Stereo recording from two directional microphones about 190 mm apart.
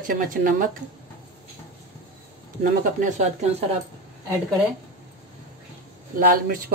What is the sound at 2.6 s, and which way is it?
Speech, 40° right (ahead or behind).